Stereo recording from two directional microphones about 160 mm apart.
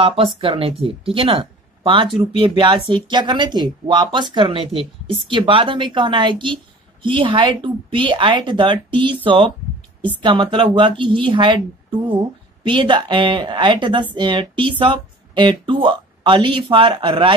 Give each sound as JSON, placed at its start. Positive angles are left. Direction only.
{"t": 0.0, "sound": "speech", "side_deg": -35}